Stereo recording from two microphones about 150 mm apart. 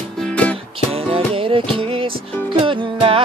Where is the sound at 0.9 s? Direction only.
40° right (ahead or behind).